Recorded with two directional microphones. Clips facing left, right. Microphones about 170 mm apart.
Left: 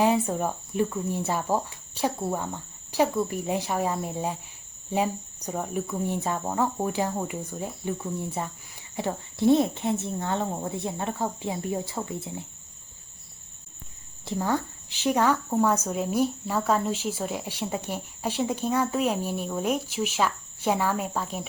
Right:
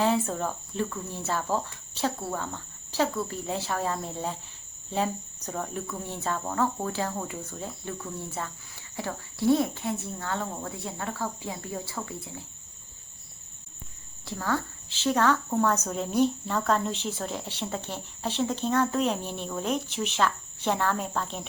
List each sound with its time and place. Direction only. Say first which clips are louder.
0.0 s a woman's voice: left 3 dB; 15° left (ahead or behind)
14.3 s a woman's voice: left 3 dB; 20° left (ahead or behind)